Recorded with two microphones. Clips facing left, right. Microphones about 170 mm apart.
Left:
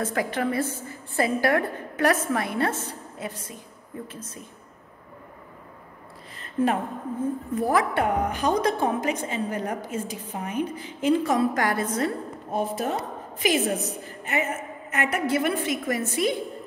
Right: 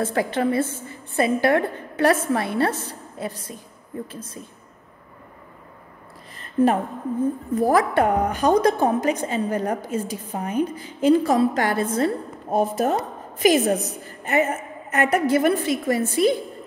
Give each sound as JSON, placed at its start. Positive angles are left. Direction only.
{"t": 0.0, "sound": "a woman's voice", "side_deg": -30}
{"t": 6.6, "sound": "a woman's voice", "side_deg": -40}
{"t": 12.4, "sound": "a woman's voice", "side_deg": -45}